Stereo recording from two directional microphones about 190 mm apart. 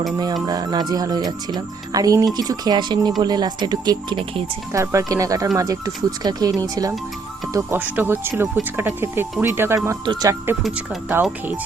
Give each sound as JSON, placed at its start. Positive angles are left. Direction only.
{"t": 0.4, "sound": "speech", "side_deg": -20}
{"t": 4.7, "sound": "speech", "side_deg": -15}